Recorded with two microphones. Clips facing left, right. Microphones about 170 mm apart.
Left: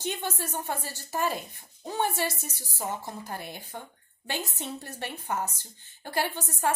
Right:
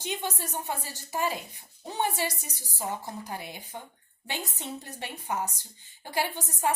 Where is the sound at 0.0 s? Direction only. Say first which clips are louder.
Left 1 dB; 15° right (ahead or behind).